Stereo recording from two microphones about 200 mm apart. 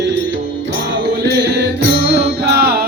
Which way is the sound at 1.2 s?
55° right (ahead or behind).